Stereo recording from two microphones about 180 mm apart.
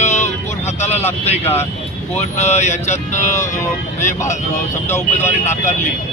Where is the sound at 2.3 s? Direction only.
40° left (ahead or behind).